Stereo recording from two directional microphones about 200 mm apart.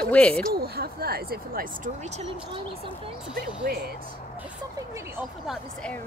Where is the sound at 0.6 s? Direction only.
50° right (ahead or behind); by 2.2 s 35° right (ahead or behind).